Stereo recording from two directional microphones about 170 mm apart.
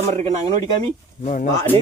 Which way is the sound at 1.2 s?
50° left (ahead or behind).